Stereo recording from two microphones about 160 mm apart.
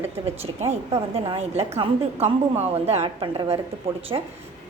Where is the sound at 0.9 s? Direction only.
35° right (ahead or behind).